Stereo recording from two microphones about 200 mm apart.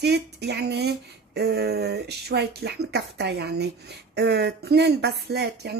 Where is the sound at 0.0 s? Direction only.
55° right (ahead or behind).